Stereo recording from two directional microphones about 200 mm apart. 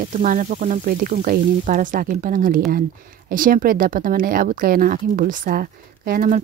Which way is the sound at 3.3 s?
45° right (ahead or behind).